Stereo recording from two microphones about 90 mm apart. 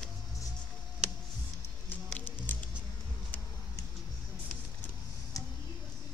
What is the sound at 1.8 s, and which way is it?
Music, 20° left (ahead or behind).